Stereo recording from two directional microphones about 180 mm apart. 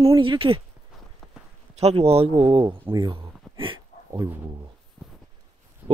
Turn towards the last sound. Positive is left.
turn(degrees=-10)  # may be behind; listen again after turning